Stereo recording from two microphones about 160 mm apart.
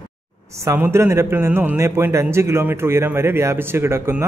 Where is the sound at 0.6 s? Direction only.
15° right (ahead or behind).